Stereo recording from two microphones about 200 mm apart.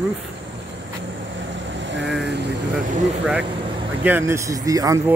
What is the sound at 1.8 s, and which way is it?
Vehicle, 65° right (ahead or behind).